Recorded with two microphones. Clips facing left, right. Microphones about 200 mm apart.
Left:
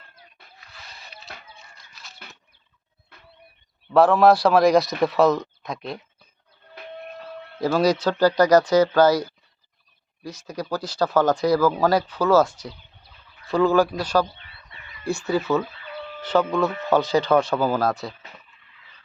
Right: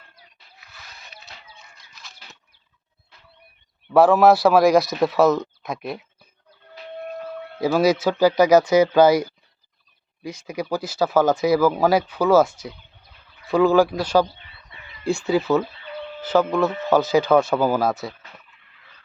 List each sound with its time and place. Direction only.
0.1 s a sound: 55° left (ahead or behind)
1.3 s music: 55° left (ahead or behind)
3.9 s a man's voice: 5° right (ahead or behind)
6.8 s a sound: 55° left (ahead or behind)
7.6 s speech: 5° right (ahead or behind)
10.2 s a man's voice: 10° right (ahead or behind)